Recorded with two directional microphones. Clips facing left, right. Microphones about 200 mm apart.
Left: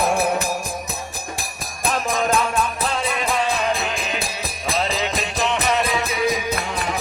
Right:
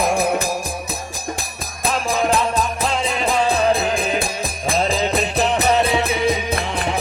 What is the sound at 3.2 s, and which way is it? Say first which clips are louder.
Music: right 6 dB; 35° right (ahead or behind).